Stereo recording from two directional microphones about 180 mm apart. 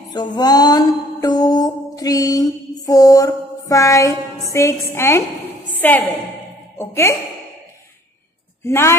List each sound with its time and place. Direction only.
0.1 s mantra: 25° left (ahead or behind)
5.8 s a woman's voice: 10° left (ahead or behind)
8.6 s speech: 15° left (ahead or behind)